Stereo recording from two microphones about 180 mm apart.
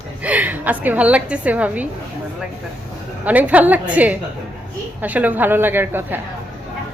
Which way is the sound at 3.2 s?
10° right (ahead or behind).